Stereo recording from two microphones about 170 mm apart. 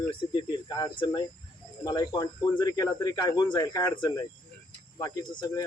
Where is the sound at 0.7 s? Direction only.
25° left (ahead or behind).